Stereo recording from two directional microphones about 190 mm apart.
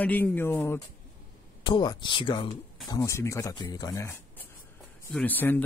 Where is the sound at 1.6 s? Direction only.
25° left (ahead or behind); by 5.6 s 10° left (ahead or behind).